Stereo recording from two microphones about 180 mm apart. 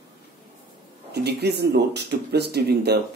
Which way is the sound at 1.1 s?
65° right (ahead or behind).